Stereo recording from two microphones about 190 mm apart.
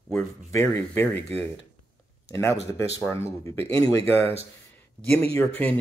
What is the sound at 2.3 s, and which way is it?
Speech, 15° left (ahead or behind).